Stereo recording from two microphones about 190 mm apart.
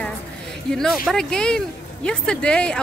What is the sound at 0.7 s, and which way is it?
A woman's voice, centre (ahead or behind).